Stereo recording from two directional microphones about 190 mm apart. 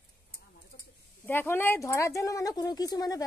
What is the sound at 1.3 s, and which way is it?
Speech, 10° left (ahead or behind).